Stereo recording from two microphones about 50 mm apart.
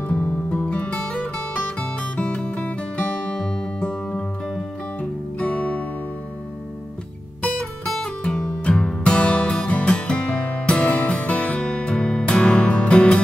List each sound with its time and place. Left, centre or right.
0.1 s music: left
7.4 s music: left